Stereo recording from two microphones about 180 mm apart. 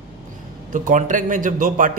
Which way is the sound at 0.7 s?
45° right (ahead or behind).